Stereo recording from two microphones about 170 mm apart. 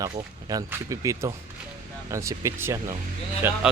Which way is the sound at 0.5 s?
20° right (ahead or behind).